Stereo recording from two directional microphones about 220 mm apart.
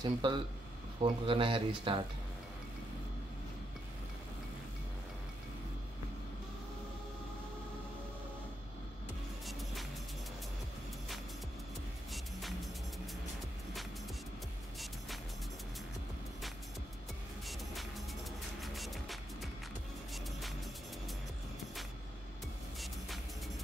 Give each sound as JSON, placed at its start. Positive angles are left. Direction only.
{"t": 0.0, "sound": "speech", "side_deg": -20}
{"t": 9.5, "sound": "music", "side_deg": 0}
{"t": 12.1, "sound": "music", "side_deg": 0}
{"t": 17.5, "sound": "music", "side_deg": 0}